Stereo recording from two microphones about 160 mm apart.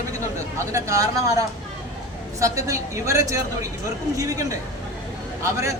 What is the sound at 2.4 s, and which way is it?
A man's voice, 20° right (ahead or behind).